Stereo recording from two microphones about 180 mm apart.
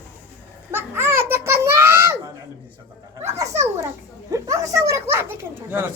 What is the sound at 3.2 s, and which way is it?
Dog, 15° right (ahead or behind).